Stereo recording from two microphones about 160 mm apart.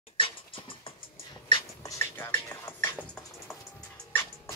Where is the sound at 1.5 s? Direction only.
20° left (ahead or behind).